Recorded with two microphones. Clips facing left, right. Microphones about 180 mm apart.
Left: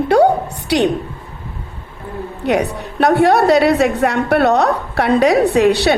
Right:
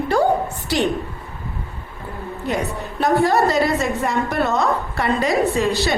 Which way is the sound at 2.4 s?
70° left (ahead or behind).